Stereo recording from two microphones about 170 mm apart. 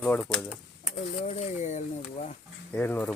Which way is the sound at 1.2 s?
40° left (ahead or behind).